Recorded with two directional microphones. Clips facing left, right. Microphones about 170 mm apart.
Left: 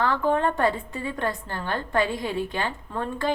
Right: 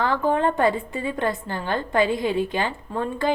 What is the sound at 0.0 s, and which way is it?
Speech, 15° right (ahead or behind).